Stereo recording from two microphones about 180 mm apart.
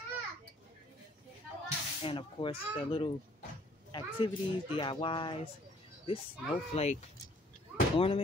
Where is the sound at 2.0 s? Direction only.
30° left (ahead or behind).